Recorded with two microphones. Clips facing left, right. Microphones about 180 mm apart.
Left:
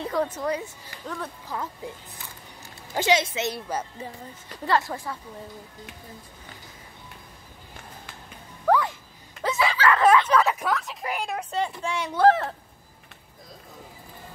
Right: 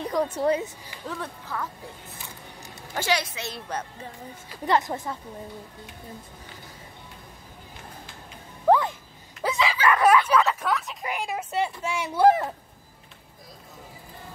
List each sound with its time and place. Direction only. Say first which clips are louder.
0.0 s a sound: even; 15° right (ahead or behind)
0.4 s speech: right 5 dB; 25° right (ahead or behind)
1.5 s a woman's voice: even; 20° left (ahead or behind)
2.9 s a woman's voice: left 4 dB; 20° left (ahead or behind)
3.6 s speech: left 2 dB; 5° left (ahead or behind)
4.6 s speech: right 1 dB; 20° right (ahead or behind)
8.6 s music: right 2 dB; 20° right (ahead or behind)
9.4 s a sound: left 1 dB; 10° right (ahead or behind)
10.4 s a sound: left 1 dB; 10° left (ahead or behind); by 12.5 s 10° right (ahead or behind)